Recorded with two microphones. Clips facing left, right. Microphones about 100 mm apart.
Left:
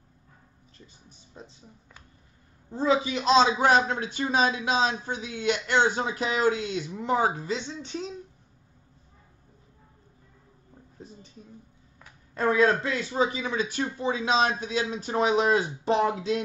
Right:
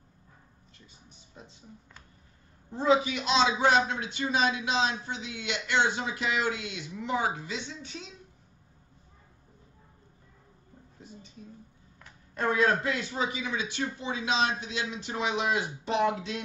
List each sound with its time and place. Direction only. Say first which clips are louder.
3.0 s a man's voice: left 5 dB; 35° left (ahead or behind)
12.4 s a man's voice: left 3 dB; 30° left (ahead or behind)